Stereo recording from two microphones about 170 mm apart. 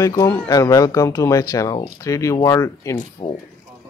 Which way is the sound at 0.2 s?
20° left (ahead or behind).